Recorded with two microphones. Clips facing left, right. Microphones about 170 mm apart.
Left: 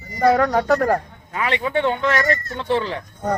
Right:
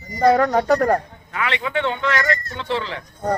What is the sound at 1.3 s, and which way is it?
Speech, 35° left (ahead or behind).